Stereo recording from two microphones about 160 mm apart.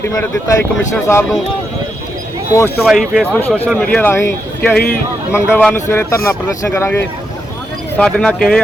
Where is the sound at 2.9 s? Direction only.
5° right (ahead or behind).